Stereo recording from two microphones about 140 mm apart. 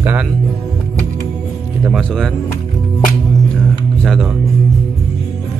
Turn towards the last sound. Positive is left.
turn(degrees=0)  # may be behind; listen again after turning